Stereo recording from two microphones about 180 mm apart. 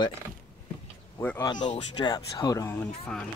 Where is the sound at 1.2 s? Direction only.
10° left (ahead or behind).